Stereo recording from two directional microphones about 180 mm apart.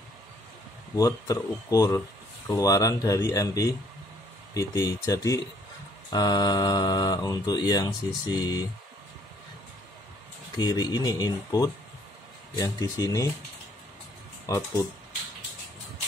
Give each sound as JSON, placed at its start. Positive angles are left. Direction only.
{"t": 0.9, "sound": "speech", "side_deg": 20}
{"t": 10.6, "sound": "speech", "side_deg": 25}
{"t": 14.4, "sound": "speech", "side_deg": 15}